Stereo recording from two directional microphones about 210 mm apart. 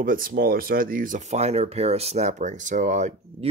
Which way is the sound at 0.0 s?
40° right (ahead or behind).